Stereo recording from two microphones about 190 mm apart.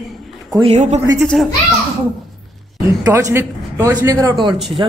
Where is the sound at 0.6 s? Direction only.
35° right (ahead or behind).